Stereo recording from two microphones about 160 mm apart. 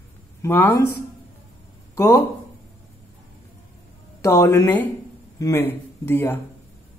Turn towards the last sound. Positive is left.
turn(degrees=15)  # may be behind; listen again after turning